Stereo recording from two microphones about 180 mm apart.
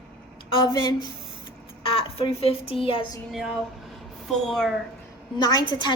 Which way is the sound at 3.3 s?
Centre (ahead or behind).